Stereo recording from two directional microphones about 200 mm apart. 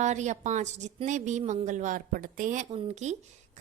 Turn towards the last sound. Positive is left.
turn(degrees=-35)  # may be behind; listen again after turning